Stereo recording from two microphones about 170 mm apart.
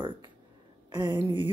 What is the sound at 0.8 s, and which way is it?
Speech, 25° right (ahead or behind).